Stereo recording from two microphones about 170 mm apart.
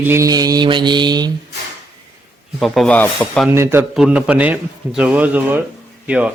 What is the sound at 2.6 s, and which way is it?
Speech, 5° left (ahead or behind).